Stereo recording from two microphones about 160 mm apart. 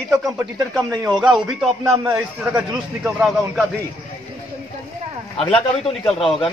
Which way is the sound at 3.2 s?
Centre (ahead or behind).